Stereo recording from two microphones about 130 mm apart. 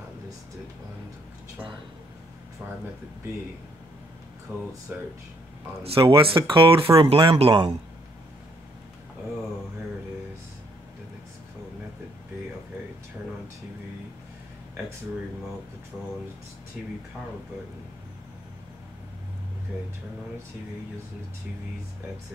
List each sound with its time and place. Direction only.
4.5 s speech: 15° right (ahead or behind)
5.9 s speech: 45° right (ahead or behind)